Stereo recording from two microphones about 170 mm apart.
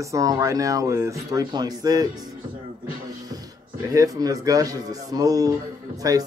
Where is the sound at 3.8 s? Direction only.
20° right (ahead or behind).